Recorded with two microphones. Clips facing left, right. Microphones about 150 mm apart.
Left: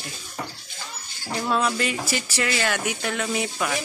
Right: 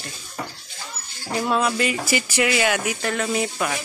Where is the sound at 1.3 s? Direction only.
5° right (ahead or behind).